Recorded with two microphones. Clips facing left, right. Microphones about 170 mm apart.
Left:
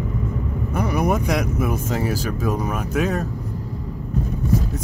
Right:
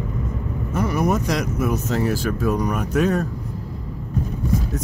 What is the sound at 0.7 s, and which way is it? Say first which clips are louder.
Vehicle: even; 15° left (ahead or behind).